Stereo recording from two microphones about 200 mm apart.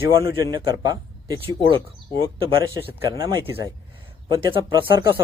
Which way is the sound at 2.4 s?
25° right (ahead or behind).